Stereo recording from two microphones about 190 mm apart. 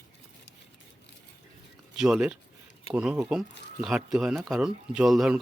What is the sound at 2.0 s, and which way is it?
Speech, 5° right (ahead or behind).